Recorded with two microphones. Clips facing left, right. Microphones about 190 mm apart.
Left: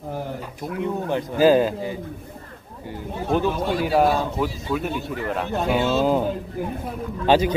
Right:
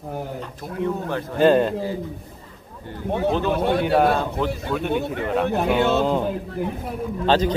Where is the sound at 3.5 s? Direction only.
65° right (ahead or behind).